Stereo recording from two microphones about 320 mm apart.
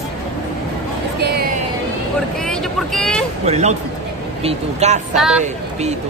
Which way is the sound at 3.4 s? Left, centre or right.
Centre.